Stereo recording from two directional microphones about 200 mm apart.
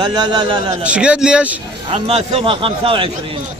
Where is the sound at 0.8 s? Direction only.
5° right (ahead or behind).